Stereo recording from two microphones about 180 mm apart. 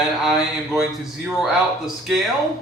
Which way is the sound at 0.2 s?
Centre (ahead or behind).